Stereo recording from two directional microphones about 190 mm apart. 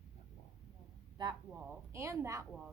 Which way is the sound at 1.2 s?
20° right (ahead or behind).